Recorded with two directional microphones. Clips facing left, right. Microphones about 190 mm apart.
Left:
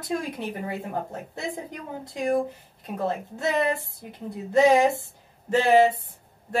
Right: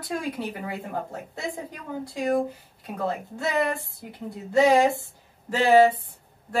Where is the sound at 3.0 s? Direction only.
20° left (ahead or behind).